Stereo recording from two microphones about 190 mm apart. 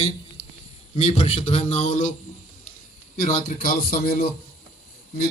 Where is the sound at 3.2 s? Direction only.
45° left (ahead or behind).